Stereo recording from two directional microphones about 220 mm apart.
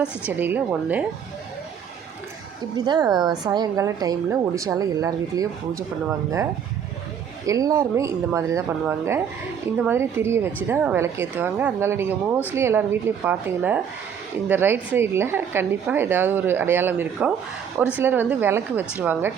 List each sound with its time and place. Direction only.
0.3 s a woman's voice: 10° right (ahead or behind)
2.7 s a woman's voice: 20° right (ahead or behind)